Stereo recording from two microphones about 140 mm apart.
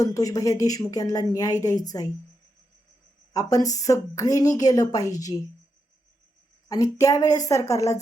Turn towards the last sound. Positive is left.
turn(degrees=25)  # may be behind; listen again after turning